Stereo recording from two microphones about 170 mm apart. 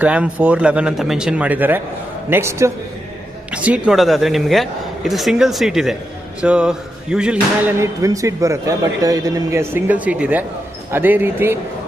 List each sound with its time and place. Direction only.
0.0 s a man's voice: 5° right (ahead or behind)
7.8 s a man's voice: 20° right (ahead or behind)